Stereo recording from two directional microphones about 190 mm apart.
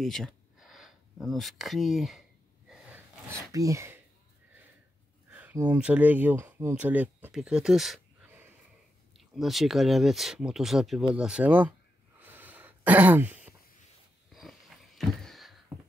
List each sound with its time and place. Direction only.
0.0 s speech: centre (ahead or behind)
2.7 s gasp: 10° right (ahead or behind)
3.5 s speech: 15° right (ahead or behind)
5.3 s a sound: 5° right (ahead or behind)
5.6 s speech: 5° right (ahead or behind)
12.2 s a sound: 10° right (ahead or behind)